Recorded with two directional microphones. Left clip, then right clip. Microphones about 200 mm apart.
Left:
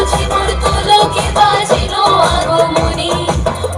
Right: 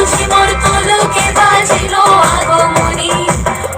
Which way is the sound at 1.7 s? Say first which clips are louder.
Right 3 dB; 15° right (ahead or behind).